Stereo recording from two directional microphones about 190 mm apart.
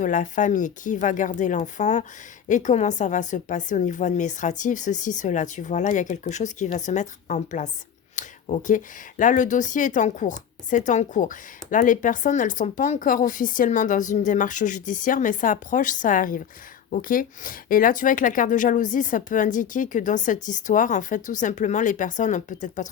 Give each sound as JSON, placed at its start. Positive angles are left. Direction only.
{"t": 0.0, "sound": "a woman's voice", "side_deg": 40}